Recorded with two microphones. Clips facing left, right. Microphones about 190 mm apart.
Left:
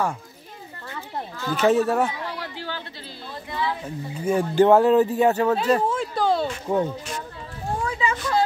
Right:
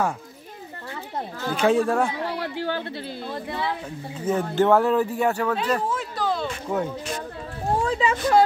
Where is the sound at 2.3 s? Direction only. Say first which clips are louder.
Right 6 dB; 55° right (ahead or behind).